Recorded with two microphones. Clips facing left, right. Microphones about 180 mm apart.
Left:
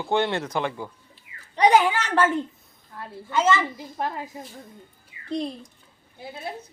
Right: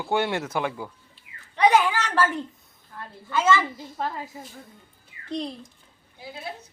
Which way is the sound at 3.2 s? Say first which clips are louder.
Even; 20° left (ahead or behind).